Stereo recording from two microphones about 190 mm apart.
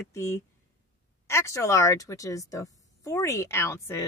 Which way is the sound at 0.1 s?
15° left (ahead or behind).